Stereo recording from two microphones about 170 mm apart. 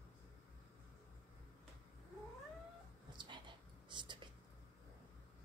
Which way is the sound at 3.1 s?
25° right (ahead or behind).